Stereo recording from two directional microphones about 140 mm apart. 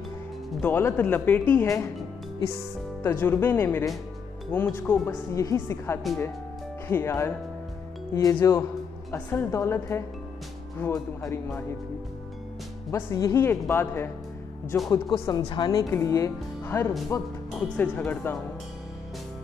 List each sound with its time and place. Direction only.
0.6 s speech: 15° left (ahead or behind)
3.0 s speech: 15° left (ahead or behind)
12.9 s speech: 20° left (ahead or behind)
15.2 s speech: 30° left (ahead or behind)
17.7 s speech: 10° left (ahead or behind)